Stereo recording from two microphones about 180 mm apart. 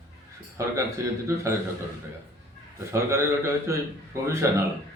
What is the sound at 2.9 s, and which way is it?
A man's voice, 15° right (ahead or behind).